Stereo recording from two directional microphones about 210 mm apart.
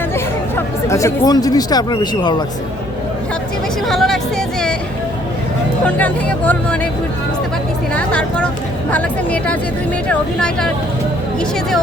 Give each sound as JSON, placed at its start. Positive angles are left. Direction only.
{"t": 0.5, "sound": "speech", "side_deg": 15}
{"t": 3.8, "sound": "speech", "side_deg": 0}
{"t": 5.8, "sound": "speech", "side_deg": 5}
{"t": 7.9, "sound": "speech", "side_deg": 5}